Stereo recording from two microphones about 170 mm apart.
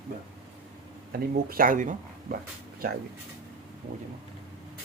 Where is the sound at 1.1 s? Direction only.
55° right (ahead or behind).